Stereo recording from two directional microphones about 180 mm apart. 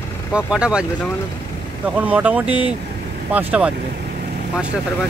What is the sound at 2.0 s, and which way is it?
Speech, 10° right (ahead or behind).